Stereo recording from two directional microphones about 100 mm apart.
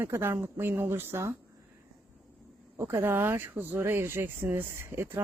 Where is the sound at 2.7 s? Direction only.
25° right (ahead or behind).